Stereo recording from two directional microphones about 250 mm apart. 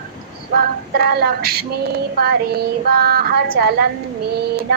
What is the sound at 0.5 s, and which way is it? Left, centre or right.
Speech, right.